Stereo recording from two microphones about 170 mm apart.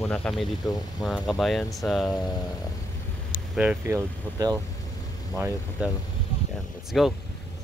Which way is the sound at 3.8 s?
15° right (ahead or behind).